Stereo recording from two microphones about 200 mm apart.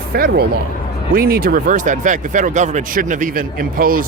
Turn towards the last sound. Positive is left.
turn(degrees=-45)  # may be behind; listen again after turning